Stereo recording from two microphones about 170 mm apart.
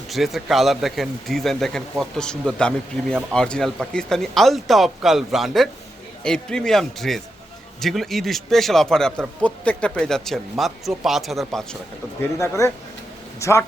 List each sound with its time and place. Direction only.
0.1 s speech: centre (ahead or behind)
12.2 s speech: 15° left (ahead or behind)